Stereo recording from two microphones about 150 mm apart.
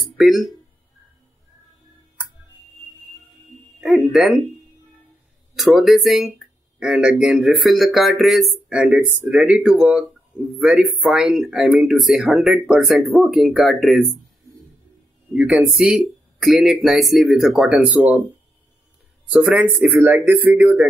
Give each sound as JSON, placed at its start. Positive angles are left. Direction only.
{"t": 0.0, "sound": "a sound", "side_deg": 0}
{"t": 3.8, "sound": "speech", "side_deg": 0}
{"t": 5.6, "sound": "speech", "side_deg": 0}
{"t": 15.3, "sound": "speech", "side_deg": -10}
{"t": 19.2, "sound": "speech", "side_deg": -5}